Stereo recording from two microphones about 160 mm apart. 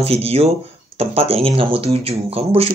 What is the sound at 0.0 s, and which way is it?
Speech, 40° right (ahead or behind).